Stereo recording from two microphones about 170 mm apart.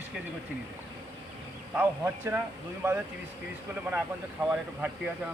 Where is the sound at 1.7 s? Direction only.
10° right (ahead or behind).